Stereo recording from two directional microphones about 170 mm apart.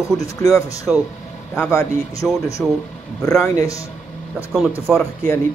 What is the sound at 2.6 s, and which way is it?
Speech, 5° left (ahead or behind).